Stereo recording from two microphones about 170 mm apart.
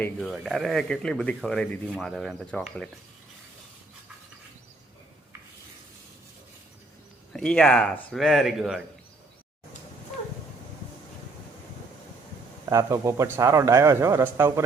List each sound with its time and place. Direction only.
0.2 s speech: centre (ahead or behind)
7.3 s speech: 5° left (ahead or behind)
12.6 s a man's voice: 20° right (ahead or behind)